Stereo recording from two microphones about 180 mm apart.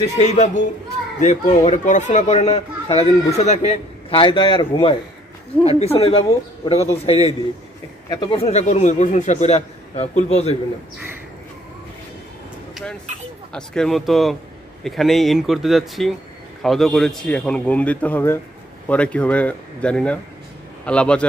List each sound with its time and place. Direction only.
0.2 s a man's voice: 40° left (ahead or behind)
13.5 s a man's voice: 5° left (ahead or behind)